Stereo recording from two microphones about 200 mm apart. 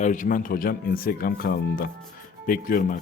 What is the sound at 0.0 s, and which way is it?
Speech, 40° left (ahead or behind).